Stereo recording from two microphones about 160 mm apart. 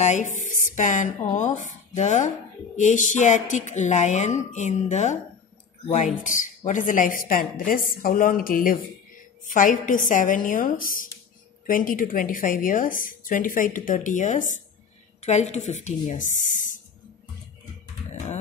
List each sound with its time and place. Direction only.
0.0 s a woman's voice: 45° left (ahead or behind)